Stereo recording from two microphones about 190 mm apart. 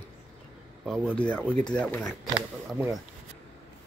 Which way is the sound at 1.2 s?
5° left (ahead or behind).